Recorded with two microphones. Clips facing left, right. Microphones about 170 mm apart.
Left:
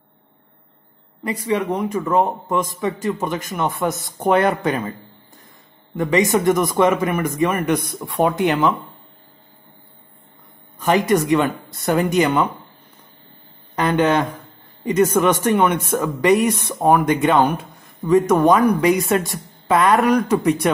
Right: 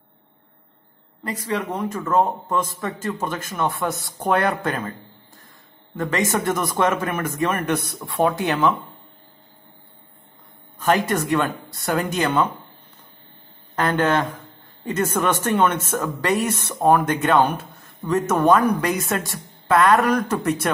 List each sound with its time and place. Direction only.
1.5 s a man's voice: 15° left (ahead or behind)
5.9 s a man's voice: 20° left (ahead or behind)
11.1 s a man's voice: 15° left (ahead or behind)
13.7 s a man's voice: 15° left (ahead or behind)